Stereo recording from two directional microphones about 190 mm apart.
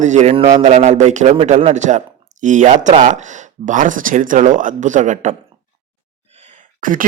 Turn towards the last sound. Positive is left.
turn(degrees=-45)  # may be behind; listen again after turning